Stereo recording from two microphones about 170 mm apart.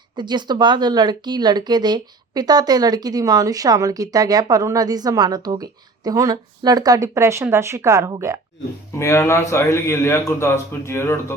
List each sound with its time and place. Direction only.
0.2 s speech: 25° right (ahead or behind)
9.0 s a man's voice: 15° left (ahead or behind)